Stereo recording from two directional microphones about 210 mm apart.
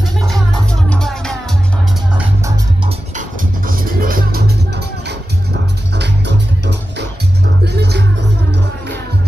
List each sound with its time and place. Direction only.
0.8 s music: 5° left (ahead or behind)
3.2 s music: 40° right (ahead or behind)